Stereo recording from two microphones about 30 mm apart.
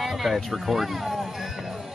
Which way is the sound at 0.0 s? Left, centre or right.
Centre.